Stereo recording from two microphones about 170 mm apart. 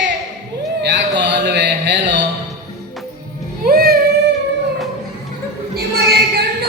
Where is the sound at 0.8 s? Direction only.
90° right.